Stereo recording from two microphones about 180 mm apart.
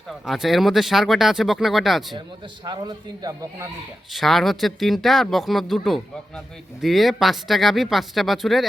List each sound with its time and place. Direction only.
0.1 s speech: centre (ahead or behind)
2.6 s speech: 20° right (ahead or behind)
4.1 s speech: centre (ahead or behind)